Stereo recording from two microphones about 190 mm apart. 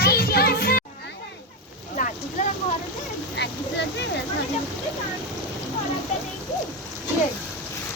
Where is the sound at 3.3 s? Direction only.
65° left (ahead or behind).